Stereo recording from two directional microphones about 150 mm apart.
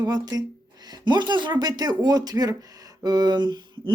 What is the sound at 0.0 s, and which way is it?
Speech, 25° right (ahead or behind).